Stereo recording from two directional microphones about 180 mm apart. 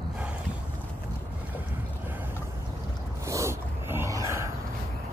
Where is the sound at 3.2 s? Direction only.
15° right (ahead or behind).